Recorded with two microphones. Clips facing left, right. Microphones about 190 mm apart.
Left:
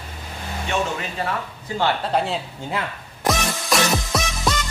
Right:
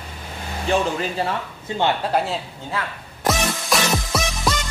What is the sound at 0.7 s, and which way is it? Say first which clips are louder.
Speech: right 4 dB; 30° right (ahead or behind).